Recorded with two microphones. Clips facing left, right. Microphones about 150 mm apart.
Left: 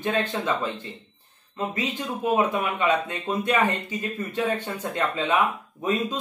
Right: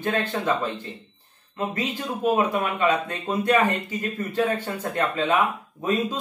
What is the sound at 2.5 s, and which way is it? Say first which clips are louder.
Speech: right 1 dB; 15° left (ahead or behind).